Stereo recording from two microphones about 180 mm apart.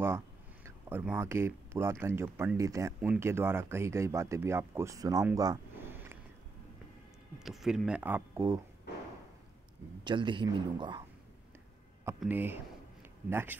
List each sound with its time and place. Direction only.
0.7 s speech: 10° right (ahead or behind)
7.3 s speech: centre (ahead or behind)
10.0 s speech: 25° right (ahead or behind)
12.2 s speech: 10° right (ahead or behind)